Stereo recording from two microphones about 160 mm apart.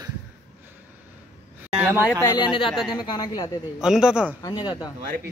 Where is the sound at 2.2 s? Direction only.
25° left (ahead or behind).